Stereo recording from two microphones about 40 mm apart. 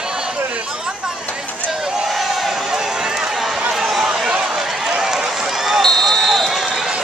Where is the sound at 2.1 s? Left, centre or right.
Centre.